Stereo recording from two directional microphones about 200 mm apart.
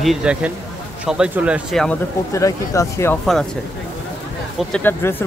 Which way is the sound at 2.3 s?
15° left (ahead or behind).